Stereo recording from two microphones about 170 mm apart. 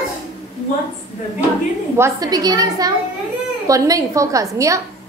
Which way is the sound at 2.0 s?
20° right (ahead or behind).